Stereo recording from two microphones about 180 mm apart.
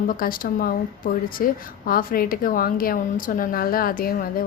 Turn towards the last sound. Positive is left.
turn(degrees=55)  # may be behind; listen again after turning